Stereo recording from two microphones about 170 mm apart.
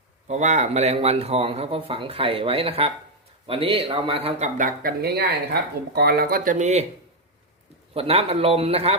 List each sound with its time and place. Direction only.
0.3 s speech: 45° right (ahead or behind)
7.9 s speech: 35° right (ahead or behind)